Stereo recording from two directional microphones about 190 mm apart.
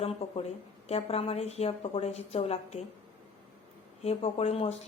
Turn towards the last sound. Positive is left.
turn(degrees=30)  # may be behind; listen again after turning